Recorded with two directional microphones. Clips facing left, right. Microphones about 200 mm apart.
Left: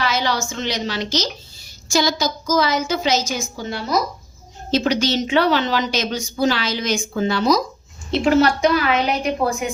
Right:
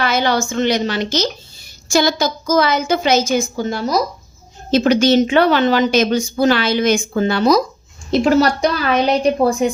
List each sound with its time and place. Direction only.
0.0 s a woman's voice: 55° right (ahead or behind)
4.7 s a woman's voice: 55° right (ahead or behind)
8.1 s a woman's voice: 40° right (ahead or behind)